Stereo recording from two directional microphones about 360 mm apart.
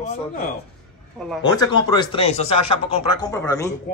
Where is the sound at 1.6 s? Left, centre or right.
Centre.